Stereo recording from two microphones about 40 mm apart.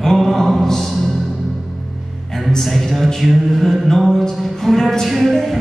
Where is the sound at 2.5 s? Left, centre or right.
Centre.